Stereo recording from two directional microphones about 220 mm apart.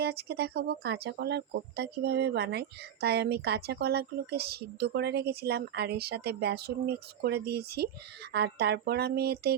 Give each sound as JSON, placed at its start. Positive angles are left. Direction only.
{"t": 0.0, "sound": "speech", "side_deg": -45}